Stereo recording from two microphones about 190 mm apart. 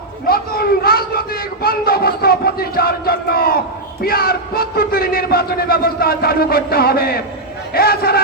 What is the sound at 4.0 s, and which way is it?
Speech, 55° left (ahead or behind).